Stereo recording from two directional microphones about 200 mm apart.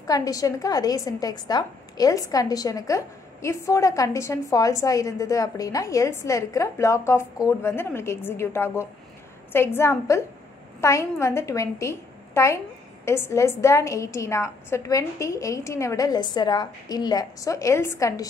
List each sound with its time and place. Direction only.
0.0 s a woman's voice: 15° left (ahead or behind)